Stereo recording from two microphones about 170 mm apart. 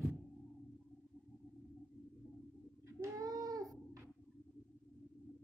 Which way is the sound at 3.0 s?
20° right (ahead or behind).